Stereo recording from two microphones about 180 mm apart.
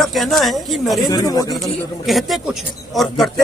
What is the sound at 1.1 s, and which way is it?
Speech, 20° left (ahead or behind).